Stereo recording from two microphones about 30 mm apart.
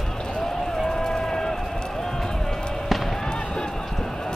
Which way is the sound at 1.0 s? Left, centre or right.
Left.